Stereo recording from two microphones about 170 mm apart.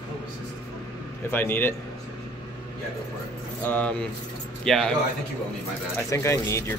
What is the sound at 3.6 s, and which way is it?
A man's voice, 10° left (ahead or behind).